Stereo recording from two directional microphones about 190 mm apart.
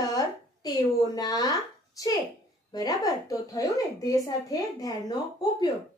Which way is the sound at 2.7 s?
20° left (ahead or behind).